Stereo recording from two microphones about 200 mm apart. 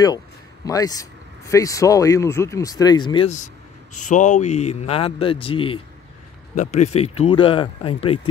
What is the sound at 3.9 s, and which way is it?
Speech, 40° left (ahead or behind).